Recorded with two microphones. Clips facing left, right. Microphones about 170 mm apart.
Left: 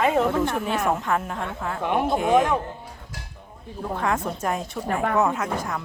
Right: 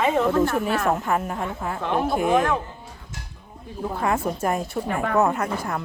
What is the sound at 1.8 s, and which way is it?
Speech, 15° left (ahead or behind).